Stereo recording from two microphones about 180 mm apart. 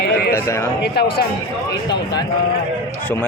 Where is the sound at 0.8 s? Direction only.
65° left (ahead or behind).